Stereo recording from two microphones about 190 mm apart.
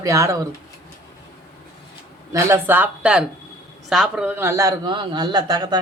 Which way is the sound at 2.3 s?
15° right (ahead or behind).